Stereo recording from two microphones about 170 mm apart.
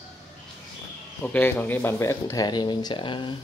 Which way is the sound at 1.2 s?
10° left (ahead or behind).